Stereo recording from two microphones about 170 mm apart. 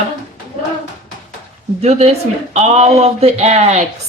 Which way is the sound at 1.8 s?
40° right (ahead or behind).